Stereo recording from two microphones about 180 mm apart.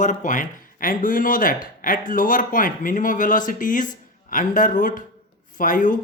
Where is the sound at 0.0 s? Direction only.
45° left (ahead or behind).